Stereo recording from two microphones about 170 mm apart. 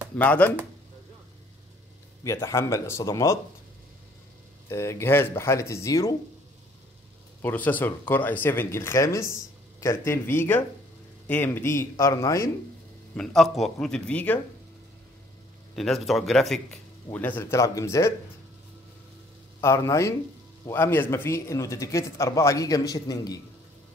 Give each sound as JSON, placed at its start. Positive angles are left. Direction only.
{"t": 0.2, "sound": "speech", "side_deg": 10}
{"t": 2.2, "sound": "speech", "side_deg": 15}
{"t": 4.6, "sound": "speech", "side_deg": 15}
{"t": 7.4, "sound": "speech", "side_deg": 10}
{"t": 13.1, "sound": "speech", "side_deg": 5}
{"t": 15.7, "sound": "speech", "side_deg": 0}
{"t": 19.6, "sound": "speech", "side_deg": 15}